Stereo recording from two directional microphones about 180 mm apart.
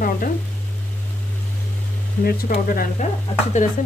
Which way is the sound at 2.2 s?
55° left (ahead or behind).